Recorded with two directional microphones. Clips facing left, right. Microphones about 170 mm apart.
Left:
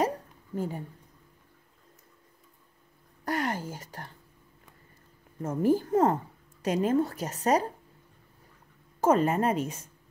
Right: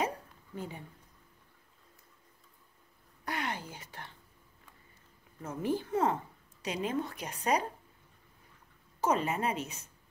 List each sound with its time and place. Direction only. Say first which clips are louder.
0.0 s a sound: left 6 dB; 40° left (ahead or behind)
3.3 s speech: left 7 dB; 45° left (ahead or behind)
5.4 s a woman's voice: left 8 dB; 45° left (ahead or behind)
9.0 s a woman's voice: left 7 dB; 45° left (ahead or behind)